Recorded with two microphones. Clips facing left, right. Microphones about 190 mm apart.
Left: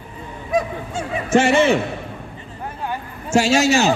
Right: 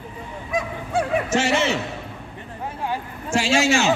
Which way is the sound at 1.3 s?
55° left (ahead or behind).